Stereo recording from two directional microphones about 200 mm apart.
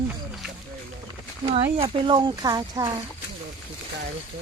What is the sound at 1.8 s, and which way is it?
Speech, 25° right (ahead or behind).